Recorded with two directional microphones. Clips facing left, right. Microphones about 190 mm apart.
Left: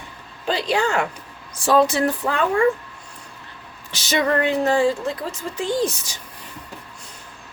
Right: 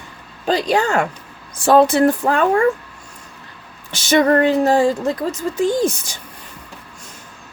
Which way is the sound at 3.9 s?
50° right (ahead or behind).